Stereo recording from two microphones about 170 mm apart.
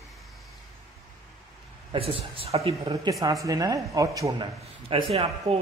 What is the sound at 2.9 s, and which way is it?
Speech, 20° right (ahead or behind).